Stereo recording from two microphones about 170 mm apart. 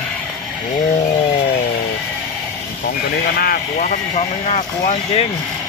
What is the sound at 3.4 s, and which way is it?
Speech, 55° left (ahead or behind).